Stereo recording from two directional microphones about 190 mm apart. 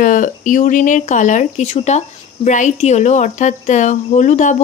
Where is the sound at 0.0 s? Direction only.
45° left (ahead or behind).